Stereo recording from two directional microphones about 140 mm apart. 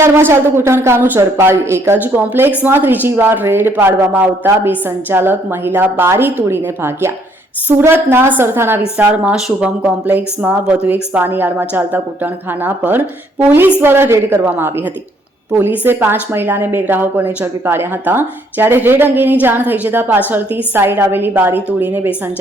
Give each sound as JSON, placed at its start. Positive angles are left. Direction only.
{"t": 0.0, "sound": "speech", "side_deg": -15}